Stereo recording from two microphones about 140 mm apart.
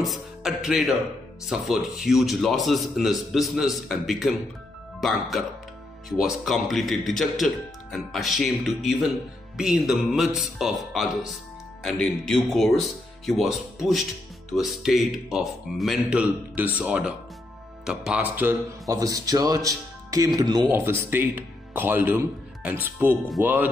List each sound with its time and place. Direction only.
0.0 s a man's voice: centre (ahead or behind)
6.0 s a man's voice: 5° right (ahead or behind); by 20.6 s 30° right (ahead or behind)
20.7 s speech: 15° right (ahead or behind)